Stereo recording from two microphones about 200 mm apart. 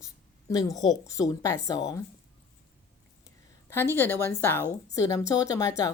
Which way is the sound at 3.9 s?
10° left (ahead or behind).